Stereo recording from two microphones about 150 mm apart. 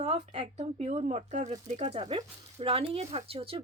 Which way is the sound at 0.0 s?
45° right (ahead or behind).